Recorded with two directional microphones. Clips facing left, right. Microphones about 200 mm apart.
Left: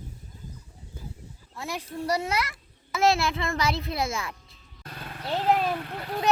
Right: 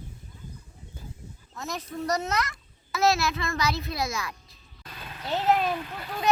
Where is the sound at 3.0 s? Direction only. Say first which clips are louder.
Left 1 dB; 30° left (ahead or behind).